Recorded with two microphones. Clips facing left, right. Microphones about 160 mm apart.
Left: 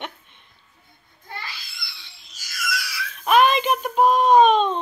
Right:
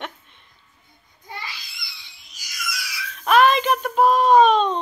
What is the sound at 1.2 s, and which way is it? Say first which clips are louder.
Babbling: right 1 dB; 15° right (ahead or behind).